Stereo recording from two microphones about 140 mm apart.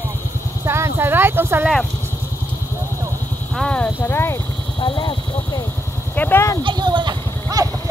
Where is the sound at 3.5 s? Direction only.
5° left (ahead or behind).